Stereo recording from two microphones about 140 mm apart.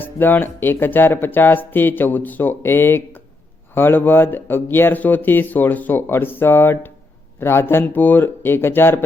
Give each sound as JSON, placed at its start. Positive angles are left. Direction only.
{"t": 0.0, "sound": "speech", "side_deg": 15}